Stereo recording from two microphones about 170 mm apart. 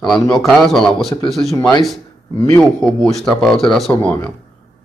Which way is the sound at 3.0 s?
Centre (ahead or behind).